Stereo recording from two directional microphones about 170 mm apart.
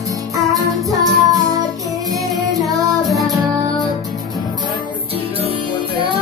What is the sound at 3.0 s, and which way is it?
Music, centre (ahead or behind).